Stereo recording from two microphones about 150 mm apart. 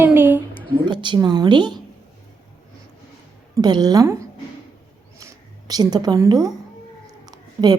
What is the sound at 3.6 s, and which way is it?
Speech, 25° right (ahead or behind).